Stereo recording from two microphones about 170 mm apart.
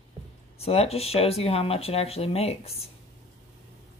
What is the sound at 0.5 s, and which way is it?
Speech, 35° left (ahead or behind).